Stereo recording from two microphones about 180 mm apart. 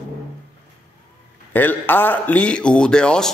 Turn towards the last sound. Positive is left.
turn(degrees=5)  # may be behind; listen again after turning